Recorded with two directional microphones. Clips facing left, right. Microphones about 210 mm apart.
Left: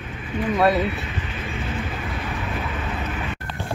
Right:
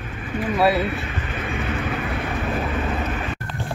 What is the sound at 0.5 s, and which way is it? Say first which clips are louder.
Speech: even; 5° right (ahead or behind).